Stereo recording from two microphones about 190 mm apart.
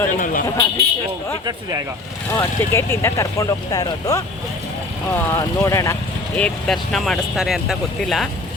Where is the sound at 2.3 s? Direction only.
15° left (ahead or behind).